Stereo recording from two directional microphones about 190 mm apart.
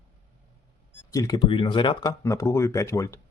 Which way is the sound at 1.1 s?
15° left (ahead or behind).